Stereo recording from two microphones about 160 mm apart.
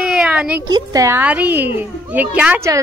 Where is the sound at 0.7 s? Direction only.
25° right (ahead or behind).